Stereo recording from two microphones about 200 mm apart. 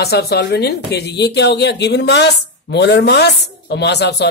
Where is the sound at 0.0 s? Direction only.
55° left (ahead or behind).